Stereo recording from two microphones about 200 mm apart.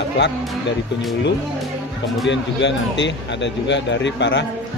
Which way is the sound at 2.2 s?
65° left (ahead or behind).